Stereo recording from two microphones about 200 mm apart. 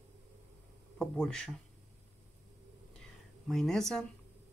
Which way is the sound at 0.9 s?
5° left (ahead or behind).